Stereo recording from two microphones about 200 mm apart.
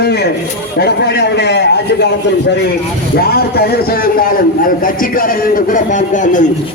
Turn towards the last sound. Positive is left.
turn(degrees=40)  # may be behind; listen again after turning